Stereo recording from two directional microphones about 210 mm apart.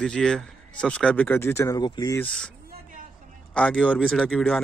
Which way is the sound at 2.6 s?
45° right (ahead or behind).